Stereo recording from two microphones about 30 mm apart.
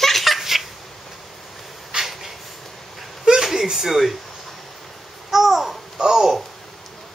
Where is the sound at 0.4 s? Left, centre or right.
Centre.